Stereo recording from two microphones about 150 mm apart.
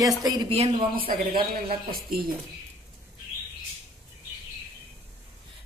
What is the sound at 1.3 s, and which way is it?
Speech, 85° right.